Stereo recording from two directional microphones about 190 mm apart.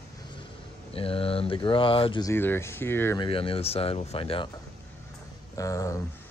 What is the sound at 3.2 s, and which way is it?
Speech, 30° left (ahead or behind).